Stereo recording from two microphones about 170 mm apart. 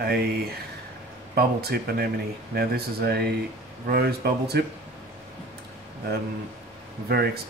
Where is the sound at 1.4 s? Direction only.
65° right (ahead or behind).